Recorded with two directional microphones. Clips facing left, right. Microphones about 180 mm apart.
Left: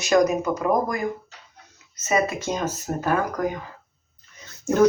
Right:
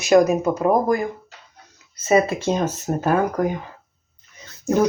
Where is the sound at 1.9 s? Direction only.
30° right (ahead or behind).